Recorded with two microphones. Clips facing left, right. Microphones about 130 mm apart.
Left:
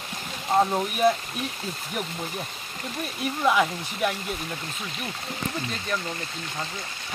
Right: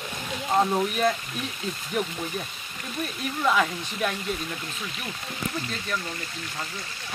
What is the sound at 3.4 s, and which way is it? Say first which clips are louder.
Speech: left 1 dB; 15° left (ahead or behind).